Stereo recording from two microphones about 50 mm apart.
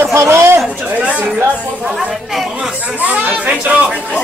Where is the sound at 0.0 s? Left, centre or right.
Right.